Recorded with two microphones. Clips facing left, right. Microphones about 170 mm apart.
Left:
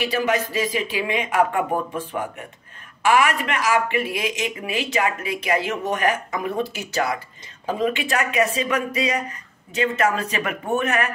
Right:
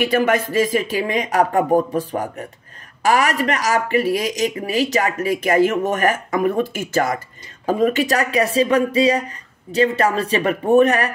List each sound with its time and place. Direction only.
0.0 s speech: 50° right (ahead or behind); by 11.1 s 35° right (ahead or behind)